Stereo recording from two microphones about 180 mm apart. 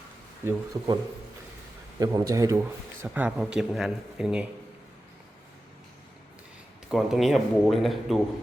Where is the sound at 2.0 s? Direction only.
20° right (ahead or behind).